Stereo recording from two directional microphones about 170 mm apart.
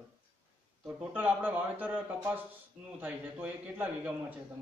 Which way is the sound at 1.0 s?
10° right (ahead or behind).